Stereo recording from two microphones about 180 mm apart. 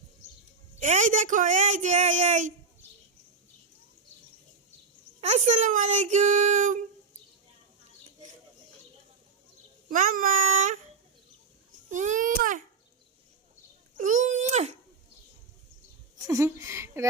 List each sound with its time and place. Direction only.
0.8 s a woman's voice: 45° right (ahead or behind)
5.5 s a woman's voice: 45° right (ahead or behind)
9.9 s a woman's voice: 50° right (ahead or behind)
11.9 s a woman's voice: 45° right (ahead or behind)
13.9 s a child's voice: 45° right (ahead or behind)
16.1 s a woman's voice: 20° right (ahead or behind)